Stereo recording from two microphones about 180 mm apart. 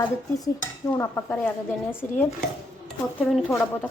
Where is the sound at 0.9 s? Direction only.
15° left (ahead or behind).